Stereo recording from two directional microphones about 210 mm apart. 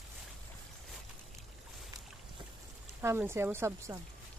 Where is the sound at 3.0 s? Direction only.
10° right (ahead or behind).